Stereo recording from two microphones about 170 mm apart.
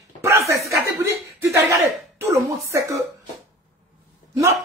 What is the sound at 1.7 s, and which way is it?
Speech, 15° right (ahead or behind).